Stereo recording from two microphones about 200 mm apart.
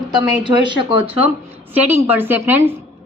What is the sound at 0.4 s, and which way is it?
Speech, 25° right (ahead or behind).